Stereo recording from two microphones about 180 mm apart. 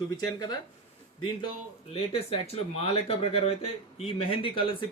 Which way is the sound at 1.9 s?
30° left (ahead or behind).